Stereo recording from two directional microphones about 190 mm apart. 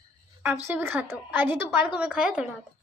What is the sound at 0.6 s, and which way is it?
A woman's voice, 10° right (ahead or behind).